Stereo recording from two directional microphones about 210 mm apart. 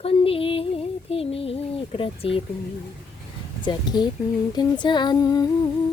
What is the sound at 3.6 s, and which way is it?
Child singing, 20° left (ahead or behind).